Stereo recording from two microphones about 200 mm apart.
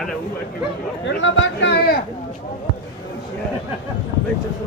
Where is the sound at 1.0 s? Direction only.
65° left (ahead or behind).